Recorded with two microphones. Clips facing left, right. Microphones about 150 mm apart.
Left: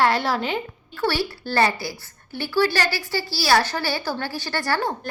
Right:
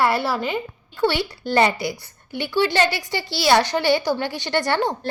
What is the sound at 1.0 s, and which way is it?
A woman's voice, 20° right (ahead or behind).